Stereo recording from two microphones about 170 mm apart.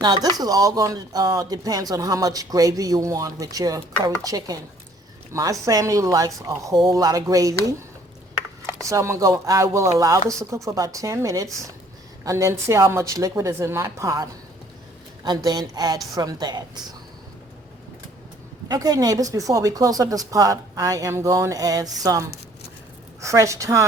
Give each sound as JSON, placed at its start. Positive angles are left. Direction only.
{"t": 0.0, "sound": "speech", "side_deg": -25}
{"t": 8.9, "sound": "a woman's voice", "side_deg": -15}
{"t": 15.4, "sound": "speech", "side_deg": -25}
{"t": 18.7, "sound": "a woman's voice", "side_deg": -20}